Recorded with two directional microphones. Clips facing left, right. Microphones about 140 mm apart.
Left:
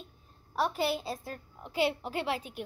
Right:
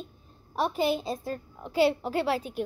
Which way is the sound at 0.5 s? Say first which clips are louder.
Right 3 dB; 15° right (ahead or behind).